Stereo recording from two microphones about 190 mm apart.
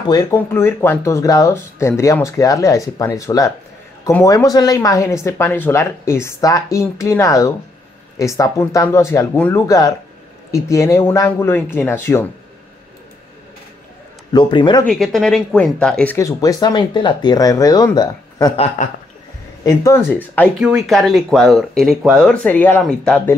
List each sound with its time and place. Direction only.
0.1 s speech: 15° left (ahead or behind)
14.3 s speech: 25° left (ahead or behind)
14.9 s speech: centre (ahead or behind); by 18.5 s 20° left (ahead or behind)
19.6 s speech: 15° left (ahead or behind)
20.0 s speech: 5° right (ahead or behind)